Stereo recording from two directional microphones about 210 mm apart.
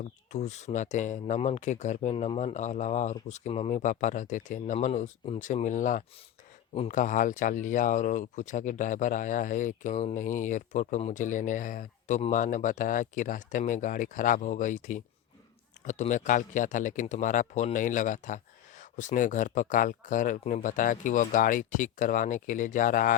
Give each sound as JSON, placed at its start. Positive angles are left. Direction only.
{"t": 0.3, "sound": "speech", "side_deg": 35}